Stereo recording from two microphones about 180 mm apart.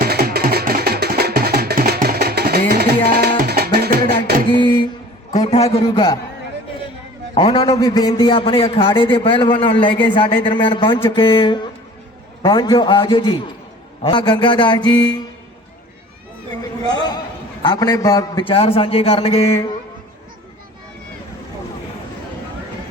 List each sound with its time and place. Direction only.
0.0 s music: 60° right (ahead or behind)
4.6 s a sound: 25° left (ahead or behind)
5.5 s a man's voice: 35° left (ahead or behind)
7.3 s a man's voice: 30° left (ahead or behind)
16.9 s a sound: 25° left (ahead or behind)
17.6 s a man's voice: 25° left (ahead or behind)